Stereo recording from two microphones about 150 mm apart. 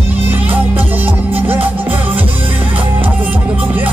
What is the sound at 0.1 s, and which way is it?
Music, 10° right (ahead or behind).